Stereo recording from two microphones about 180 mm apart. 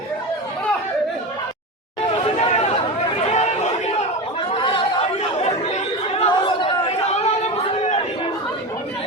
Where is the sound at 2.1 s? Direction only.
35° left (ahead or behind).